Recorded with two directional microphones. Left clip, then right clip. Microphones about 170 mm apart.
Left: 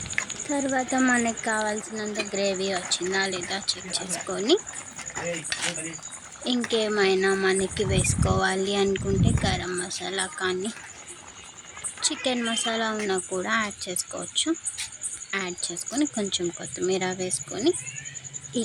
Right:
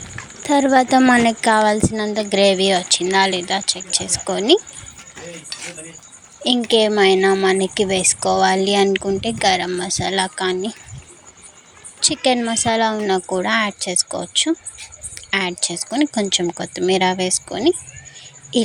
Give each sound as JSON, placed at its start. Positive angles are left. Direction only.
{"t": 0.4, "sound": "speech", "side_deg": -55}
{"t": 6.7, "sound": "a woman's voice", "side_deg": -35}
{"t": 11.9, "sound": "a woman's voice", "side_deg": -35}